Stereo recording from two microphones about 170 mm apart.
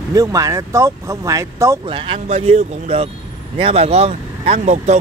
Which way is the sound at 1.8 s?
30° right (ahead or behind).